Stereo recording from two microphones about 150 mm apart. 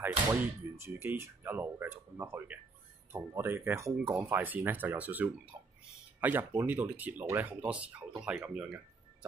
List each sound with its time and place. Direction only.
0.3 s speech: 15° right (ahead or behind)